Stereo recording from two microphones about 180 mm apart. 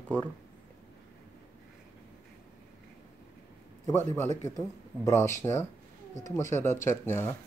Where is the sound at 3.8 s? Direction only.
15° left (ahead or behind).